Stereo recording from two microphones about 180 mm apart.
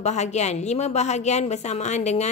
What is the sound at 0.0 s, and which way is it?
Speech, 40° left (ahead or behind).